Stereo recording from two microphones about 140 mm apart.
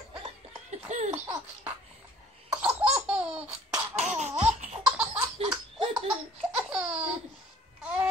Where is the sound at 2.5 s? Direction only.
10° right (ahead or behind).